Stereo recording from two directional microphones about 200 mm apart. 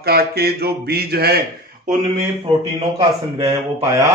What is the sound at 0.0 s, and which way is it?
Speech, 50° right (ahead or behind).